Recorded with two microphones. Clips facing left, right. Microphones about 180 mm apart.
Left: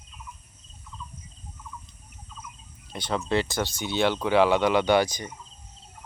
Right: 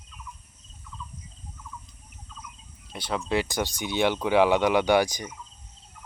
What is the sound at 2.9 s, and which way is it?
Speech, 5° right (ahead or behind).